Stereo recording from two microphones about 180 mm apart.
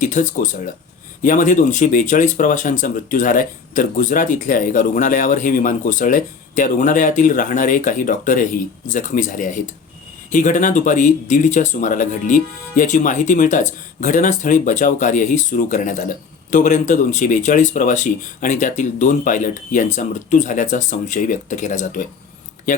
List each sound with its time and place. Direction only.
0.0 s speech: 45° left (ahead or behind)